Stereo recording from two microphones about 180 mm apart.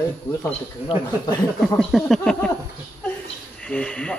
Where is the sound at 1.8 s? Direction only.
Centre (ahead or behind).